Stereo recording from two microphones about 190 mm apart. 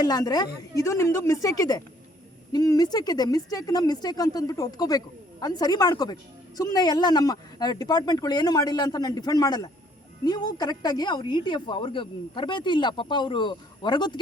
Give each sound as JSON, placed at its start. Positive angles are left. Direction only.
{"t": 0.0, "sound": "speech", "side_deg": 20}